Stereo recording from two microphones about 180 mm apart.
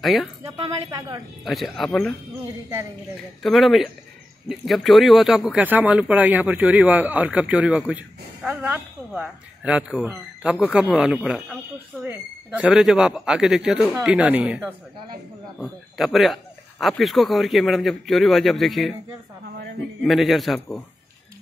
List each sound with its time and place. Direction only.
0.0 s a man's voice: centre (ahead or behind)
0.7 s a woman's voice: 20° right (ahead or behind)
1.4 s a man's voice: centre (ahead or behind)
3.4 s a man's voice: centre (ahead or behind)
19.4 s a sound: 65° right (ahead or behind)
20.0 s a man's voice: centre (ahead or behind)